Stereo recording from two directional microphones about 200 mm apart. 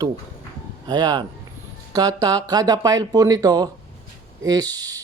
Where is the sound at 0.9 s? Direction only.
20° right (ahead or behind).